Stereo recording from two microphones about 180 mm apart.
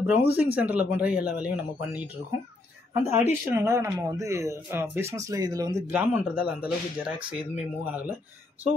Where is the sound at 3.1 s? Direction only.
15° right (ahead or behind).